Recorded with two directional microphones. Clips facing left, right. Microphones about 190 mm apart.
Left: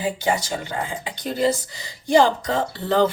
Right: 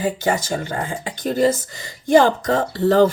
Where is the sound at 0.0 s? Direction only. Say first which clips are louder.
Right 2 dB; 45° right (ahead or behind).